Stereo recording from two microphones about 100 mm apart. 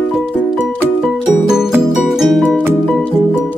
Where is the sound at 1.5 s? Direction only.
5° right (ahead or behind).